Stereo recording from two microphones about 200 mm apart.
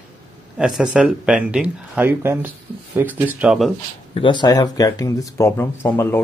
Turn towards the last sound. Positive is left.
turn(degrees=10)  # may be behind; listen again after turning